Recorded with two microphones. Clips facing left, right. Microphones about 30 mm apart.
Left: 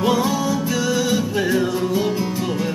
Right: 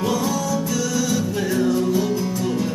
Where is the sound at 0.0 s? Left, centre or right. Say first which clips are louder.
Left 3 dB; centre.